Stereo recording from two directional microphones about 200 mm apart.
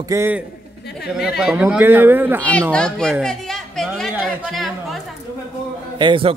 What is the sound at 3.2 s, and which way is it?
Chatter, centre (ahead or behind).